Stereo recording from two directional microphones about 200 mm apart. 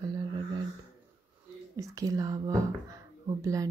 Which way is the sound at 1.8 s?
15° right (ahead or behind).